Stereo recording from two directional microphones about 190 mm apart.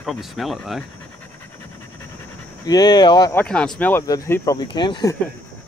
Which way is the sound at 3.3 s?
5° left (ahead or behind).